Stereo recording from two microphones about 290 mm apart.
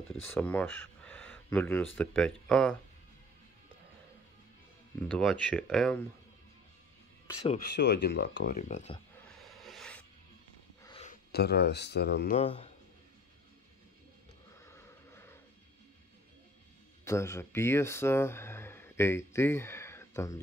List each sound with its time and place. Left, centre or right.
0.3 s speech: centre
5.0 s speech: centre
7.4 s speech: left
9.3 s a sound: centre
10.8 s a sound: centre
11.3 s speech: left
12.4 s speech: left
14.6 s a sound: centre
17.0 s speech: centre